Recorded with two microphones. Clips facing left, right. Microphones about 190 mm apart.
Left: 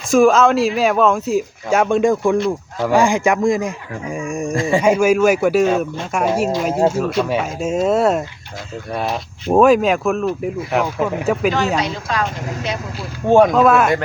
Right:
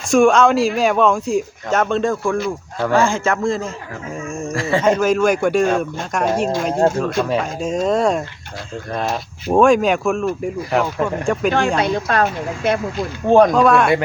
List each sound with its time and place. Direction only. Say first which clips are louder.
0.1 s speech: left 1 dB; centre (ahead or behind)
9.6 s speech: left 1 dB; 5° left (ahead or behind)
11.8 s speech: right 4 dB; 55° right (ahead or behind)
13.0 s speech: left 1 dB; 5° left (ahead or behind)